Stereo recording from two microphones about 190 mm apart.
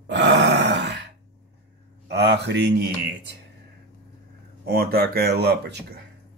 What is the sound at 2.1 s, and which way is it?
Speech, 60° right (ahead or behind).